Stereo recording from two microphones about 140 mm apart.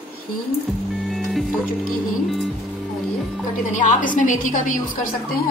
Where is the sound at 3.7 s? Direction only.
65° left (ahead or behind).